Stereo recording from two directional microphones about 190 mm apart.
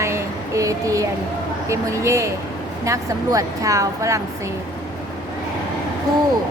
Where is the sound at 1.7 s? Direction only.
15° right (ahead or behind).